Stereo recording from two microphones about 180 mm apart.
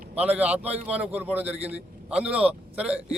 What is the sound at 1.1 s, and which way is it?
A man's voice, 10° right (ahead or behind).